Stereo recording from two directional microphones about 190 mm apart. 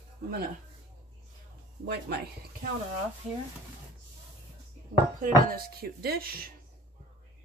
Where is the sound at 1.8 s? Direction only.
60° right (ahead or behind).